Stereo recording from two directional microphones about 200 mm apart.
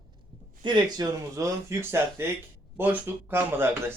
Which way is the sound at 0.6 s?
20° right (ahead or behind).